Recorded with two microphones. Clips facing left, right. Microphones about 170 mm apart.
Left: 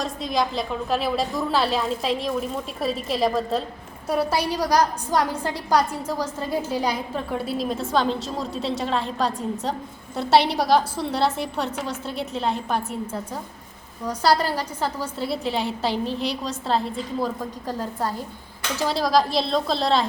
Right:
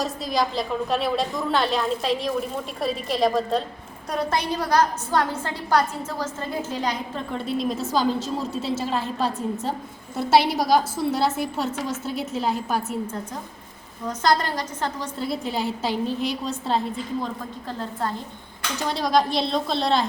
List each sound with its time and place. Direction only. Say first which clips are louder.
0.0 s a woman's voice: even; centre (ahead or behind)
14.1 s a woman's voice: left 1 dB; 10° left (ahead or behind)
17.7 s a woman's voice: left 1 dB; 10° left (ahead or behind)
18.9 s a woman's voice: even; centre (ahead or behind)